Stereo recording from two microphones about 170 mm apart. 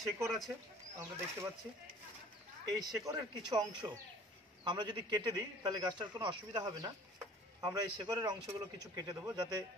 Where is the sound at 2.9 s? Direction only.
20° right (ahead or behind).